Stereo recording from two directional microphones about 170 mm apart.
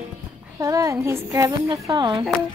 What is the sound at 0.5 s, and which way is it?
Speech, 20° right (ahead or behind).